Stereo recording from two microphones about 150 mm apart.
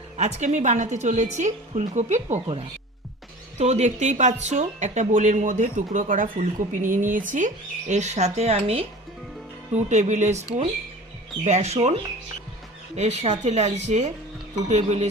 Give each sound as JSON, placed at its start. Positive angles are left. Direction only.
{"t": 0.2, "sound": "speech", "side_deg": -50}
{"t": 9.7, "sound": "speech", "side_deg": -50}
{"t": 11.4, "sound": "speech", "side_deg": -50}
{"t": 13.0, "sound": "speech", "side_deg": -50}